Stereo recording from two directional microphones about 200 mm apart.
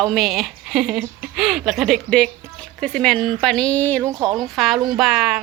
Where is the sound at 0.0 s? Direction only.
Centre (ahead or behind).